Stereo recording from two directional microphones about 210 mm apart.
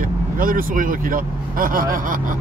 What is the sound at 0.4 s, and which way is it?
Speech, 40° right (ahead or behind).